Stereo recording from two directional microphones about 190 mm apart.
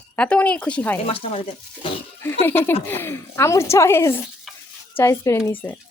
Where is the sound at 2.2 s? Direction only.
10° left (ahead or behind).